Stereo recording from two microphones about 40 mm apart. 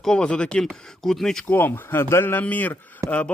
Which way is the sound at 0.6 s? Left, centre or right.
Centre.